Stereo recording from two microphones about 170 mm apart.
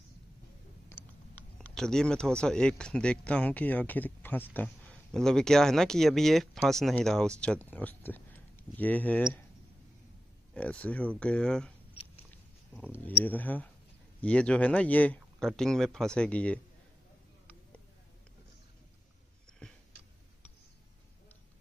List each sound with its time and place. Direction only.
0.9 s a sound: 15° left (ahead or behind)
1.3 s speech: 5° left (ahead or behind)
10.5 s speech: 5° left (ahead or behind)
12.8 s speech: 10° left (ahead or behind)